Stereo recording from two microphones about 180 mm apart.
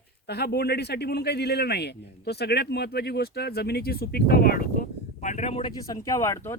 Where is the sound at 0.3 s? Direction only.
65° left (ahead or behind); by 5.7 s 35° left (ahead or behind).